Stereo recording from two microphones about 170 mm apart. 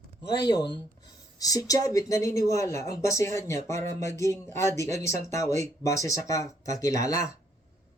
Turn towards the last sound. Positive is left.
turn(degrees=20)  # may be behind; listen again after turning